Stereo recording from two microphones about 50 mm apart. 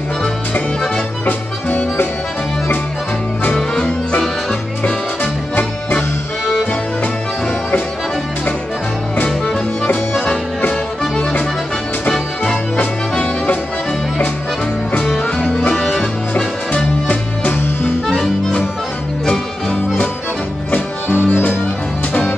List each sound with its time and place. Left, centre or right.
1.2 s music: left
3.7 s music: centre
5.2 s music: left
6.4 s music: centre
10.1 s music: centre
15.2 s music: centre
18.0 s accordion: centre
19.2 s music: centre
20.7 s music: left